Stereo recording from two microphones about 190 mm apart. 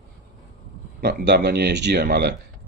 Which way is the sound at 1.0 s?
60° right (ahead or behind).